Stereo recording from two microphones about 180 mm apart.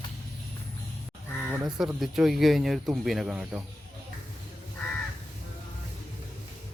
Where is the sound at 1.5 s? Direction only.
5° right (ahead or behind).